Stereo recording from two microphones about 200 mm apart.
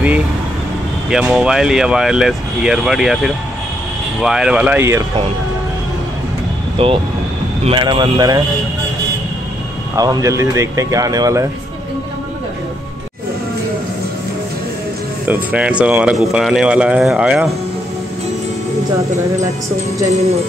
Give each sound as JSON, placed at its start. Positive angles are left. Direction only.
{"t": 1.1, "sound": "speech", "side_deg": 0}
{"t": 6.8, "sound": "speech", "side_deg": -25}
{"t": 9.9, "sound": "speech", "side_deg": -20}
{"t": 15.5, "sound": "speech", "side_deg": -5}
{"t": 20.1, "sound": "speech", "side_deg": -30}